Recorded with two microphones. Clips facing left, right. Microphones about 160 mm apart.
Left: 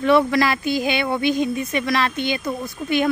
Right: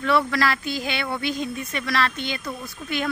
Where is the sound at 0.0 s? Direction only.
15° left (ahead or behind).